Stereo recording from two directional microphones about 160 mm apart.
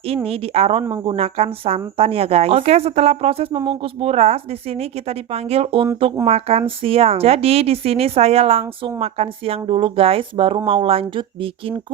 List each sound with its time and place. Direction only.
0.3 s a woman's voice: 40° right (ahead or behind)